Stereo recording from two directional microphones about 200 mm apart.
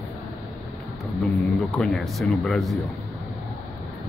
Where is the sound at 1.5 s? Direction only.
Centre (ahead or behind).